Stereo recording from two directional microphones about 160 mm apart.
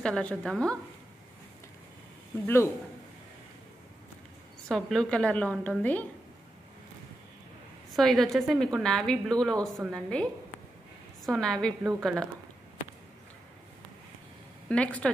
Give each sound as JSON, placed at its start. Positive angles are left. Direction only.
{"t": 0.0, "sound": "a woman's voice", "side_deg": 5}
{"t": 2.4, "sound": "a woman's voice", "side_deg": 15}
{"t": 4.6, "sound": "a woman's voice", "side_deg": 5}
{"t": 7.9, "sound": "a woman's voice", "side_deg": 0}
{"t": 11.2, "sound": "a woman's voice", "side_deg": 5}
{"t": 14.7, "sound": "a woman's voice", "side_deg": 10}